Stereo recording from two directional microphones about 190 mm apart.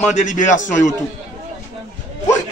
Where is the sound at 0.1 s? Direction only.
40° left (ahead or behind).